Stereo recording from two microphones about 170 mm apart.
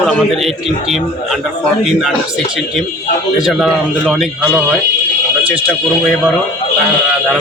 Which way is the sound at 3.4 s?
Centre (ahead or behind).